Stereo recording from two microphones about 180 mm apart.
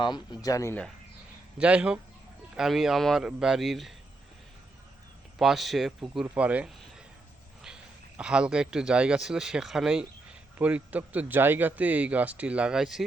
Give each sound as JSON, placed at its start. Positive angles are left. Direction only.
{"t": 0.0, "sound": "speech", "side_deg": 25}
{"t": 1.5, "sound": "a man's voice", "side_deg": -5}
{"t": 5.4, "sound": "a man's voice", "side_deg": 0}